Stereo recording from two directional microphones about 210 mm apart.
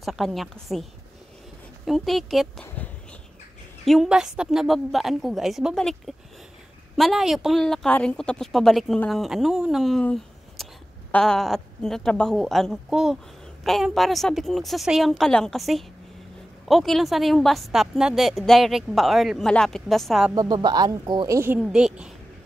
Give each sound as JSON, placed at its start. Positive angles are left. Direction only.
{"t": 0.0, "sound": "a woman's voice", "side_deg": 0}
{"t": 1.9, "sound": "a woman's voice", "side_deg": 0}
{"t": 20.3, "sound": "speech", "side_deg": -20}